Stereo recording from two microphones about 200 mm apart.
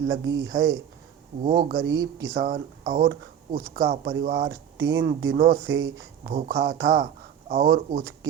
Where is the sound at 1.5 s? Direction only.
45° right (ahead or behind).